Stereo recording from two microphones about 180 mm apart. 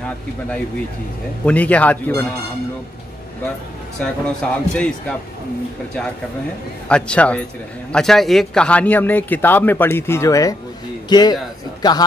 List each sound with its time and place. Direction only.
1.4 s a man's voice: 10° left (ahead or behind)
4.0 s speech: 5° left (ahead or behind)
6.9 s a man's voice: 5° left (ahead or behind); by 12.0 s 20° left (ahead or behind)